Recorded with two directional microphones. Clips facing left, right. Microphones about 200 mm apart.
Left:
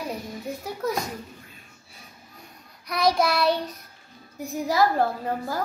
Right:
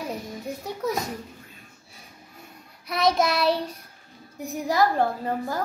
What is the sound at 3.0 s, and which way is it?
Child singing, 20° right (ahead or behind).